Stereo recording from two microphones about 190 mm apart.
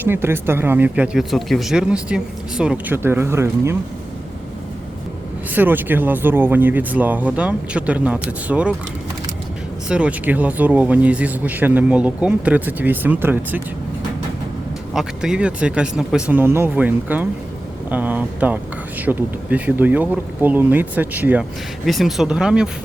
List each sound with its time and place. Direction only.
0.0 s speech: 10° right (ahead or behind)
5.5 s speech: 10° right (ahead or behind)
9.9 s speech: 5° right (ahead or behind)
14.9 s speech: 5° right (ahead or behind)